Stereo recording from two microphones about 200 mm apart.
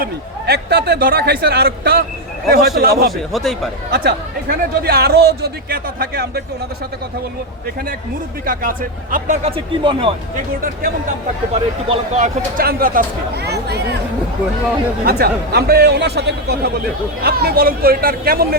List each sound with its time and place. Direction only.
0.0 s speech: 55° right (ahead or behind)
3.3 s speech: centre (ahead or behind)
3.9 s speech: 45° right (ahead or behind)
8.4 s speech: 45° right (ahead or behind); by 10.4 s 30° right (ahead or behind)
11.9 s speech: 35° right (ahead or behind); by 13.8 s 55° right (ahead or behind)
15.0 s speech: 50° right (ahead or behind)